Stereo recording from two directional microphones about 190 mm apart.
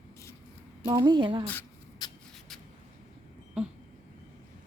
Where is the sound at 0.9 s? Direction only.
20° right (ahead or behind).